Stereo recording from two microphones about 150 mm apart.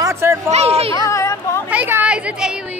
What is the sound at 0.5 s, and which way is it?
Speech, 45° right (ahead or behind).